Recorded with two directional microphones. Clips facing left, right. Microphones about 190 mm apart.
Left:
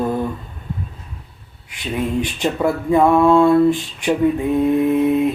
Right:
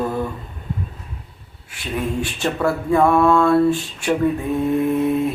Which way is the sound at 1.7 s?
20° left (ahead or behind).